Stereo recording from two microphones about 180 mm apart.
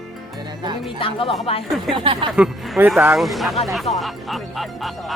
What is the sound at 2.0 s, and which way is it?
Speech, 30° right (ahead or behind).